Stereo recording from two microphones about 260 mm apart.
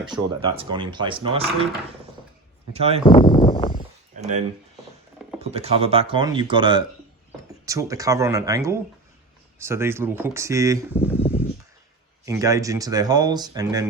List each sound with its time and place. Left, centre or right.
0.5 s speech: centre
2.7 s speech: right
3.1 s speech: centre
4.1 s speech: right
10.9 s speech: centre
12.2 s speech: centre